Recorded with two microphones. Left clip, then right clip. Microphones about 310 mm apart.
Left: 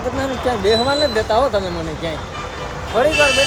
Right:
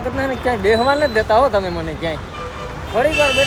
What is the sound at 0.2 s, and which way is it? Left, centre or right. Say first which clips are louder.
Speech: right 2 dB; centre.